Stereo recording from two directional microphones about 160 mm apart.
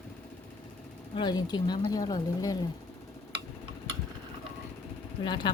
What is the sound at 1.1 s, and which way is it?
Speech, 25° left (ahead or behind).